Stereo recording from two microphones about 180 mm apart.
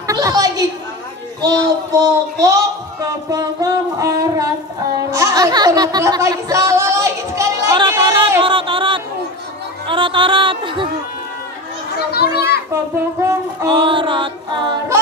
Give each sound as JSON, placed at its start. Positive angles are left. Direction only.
{"t": 0.0, "sound": "chatter", "side_deg": -20}
{"t": 1.4, "sound": "speech", "side_deg": -20}
{"t": 4.9, "sound": "a sound", "side_deg": -20}
{"t": 9.8, "sound": "music", "side_deg": -30}
{"t": 12.1, "sound": "children playing", "side_deg": 60}
{"t": 12.9, "sound": "a sound", "side_deg": -15}
{"t": 13.7, "sound": "music", "side_deg": -25}